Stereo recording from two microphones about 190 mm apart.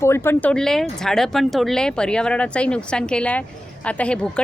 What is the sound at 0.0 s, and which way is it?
Speech, 15° left (ahead or behind).